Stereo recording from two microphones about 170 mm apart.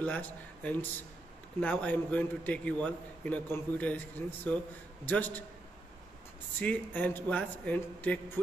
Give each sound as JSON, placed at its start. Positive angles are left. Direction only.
{"t": 0.0, "sound": "a man's voice", "side_deg": 10}
{"t": 6.6, "sound": "a man's voice", "side_deg": 10}